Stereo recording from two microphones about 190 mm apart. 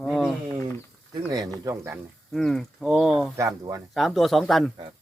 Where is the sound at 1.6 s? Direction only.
15° right (ahead or behind).